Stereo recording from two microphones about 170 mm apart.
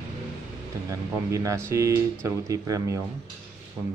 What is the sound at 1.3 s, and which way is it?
Speech, 15° right (ahead or behind).